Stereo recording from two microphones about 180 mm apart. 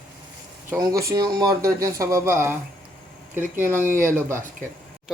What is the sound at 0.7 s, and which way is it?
Speech, 15° right (ahead or behind).